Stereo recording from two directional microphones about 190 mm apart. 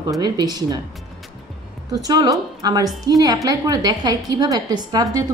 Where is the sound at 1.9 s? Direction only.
20° right (ahead or behind).